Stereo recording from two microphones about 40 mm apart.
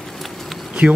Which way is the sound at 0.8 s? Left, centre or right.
Right.